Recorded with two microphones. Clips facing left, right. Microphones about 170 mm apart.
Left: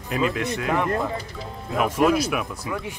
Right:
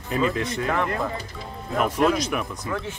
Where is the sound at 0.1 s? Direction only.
5° left (ahead or behind).